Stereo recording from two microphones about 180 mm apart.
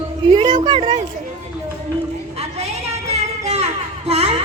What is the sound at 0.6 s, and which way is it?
Speech, 30° right (ahead or behind).